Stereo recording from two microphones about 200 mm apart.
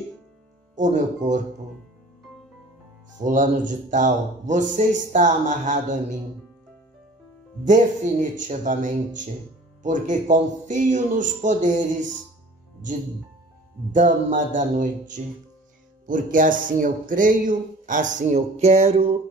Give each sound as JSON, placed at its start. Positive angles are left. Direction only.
{"t": 1.2, "sound": "speech", "side_deg": -35}
{"t": 3.2, "sound": "speech", "side_deg": -40}
{"t": 7.6, "sound": "speech", "side_deg": -40}
{"t": 13.9, "sound": "speech", "side_deg": -40}